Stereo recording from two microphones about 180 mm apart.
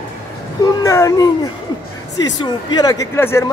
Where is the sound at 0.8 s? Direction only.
15° left (ahead or behind).